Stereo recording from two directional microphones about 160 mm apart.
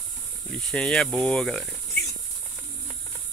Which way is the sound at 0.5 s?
5° left (ahead or behind).